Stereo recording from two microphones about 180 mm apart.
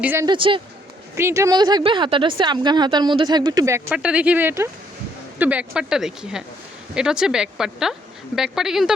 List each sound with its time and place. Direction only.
0.0 s speech: 10° right (ahead or behind)
0.3 s speech: 30° right (ahead or behind)
1.1 s speech: 15° right (ahead or behind)
3.8 s speech: 5° right (ahead or behind)